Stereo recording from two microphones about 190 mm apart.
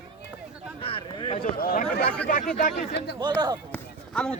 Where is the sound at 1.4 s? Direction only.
50° left (ahead or behind).